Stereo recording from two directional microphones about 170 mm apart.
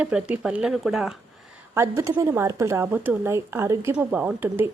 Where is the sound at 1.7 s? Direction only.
15° right (ahead or behind).